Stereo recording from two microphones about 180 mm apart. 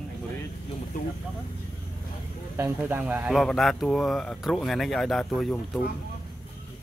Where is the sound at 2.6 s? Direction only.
10° right (ahead or behind).